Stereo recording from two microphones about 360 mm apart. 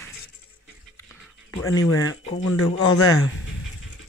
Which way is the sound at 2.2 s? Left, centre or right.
Left.